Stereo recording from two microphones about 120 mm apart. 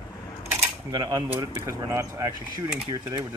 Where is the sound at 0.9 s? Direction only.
30° right (ahead or behind).